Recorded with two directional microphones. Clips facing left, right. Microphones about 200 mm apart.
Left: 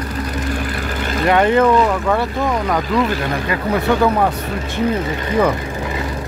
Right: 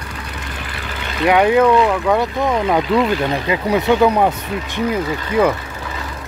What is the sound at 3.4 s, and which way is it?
Speech, 20° right (ahead or behind).